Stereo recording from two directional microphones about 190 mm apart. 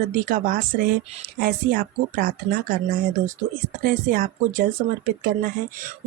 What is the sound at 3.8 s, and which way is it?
Speech, 50° right (ahead or behind).